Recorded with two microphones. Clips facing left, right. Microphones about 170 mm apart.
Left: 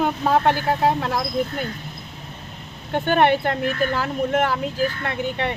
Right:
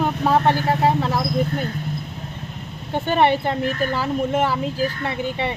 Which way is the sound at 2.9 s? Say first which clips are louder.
Even; centre (ahead or behind).